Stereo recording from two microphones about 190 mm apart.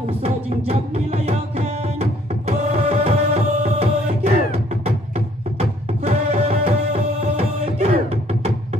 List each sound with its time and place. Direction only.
0.0 s music: 35° right (ahead or behind)